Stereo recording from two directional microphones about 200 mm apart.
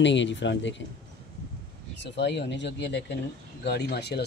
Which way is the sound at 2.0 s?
60° left (ahead or behind).